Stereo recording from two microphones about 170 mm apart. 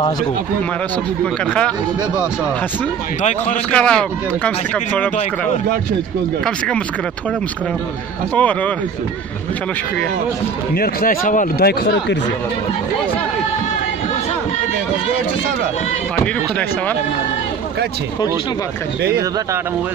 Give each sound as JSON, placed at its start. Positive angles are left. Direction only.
{"t": 1.2, "sound": "speech", "side_deg": 5}
{"t": 3.2, "sound": "a man's voice", "side_deg": 45}
{"t": 3.7, "sound": "speech", "side_deg": 5}
{"t": 8.4, "sound": "speech", "side_deg": 10}
{"t": 10.7, "sound": "a man's voice", "side_deg": 60}